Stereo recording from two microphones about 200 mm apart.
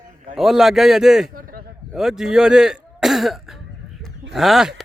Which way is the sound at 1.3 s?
45° right (ahead or behind).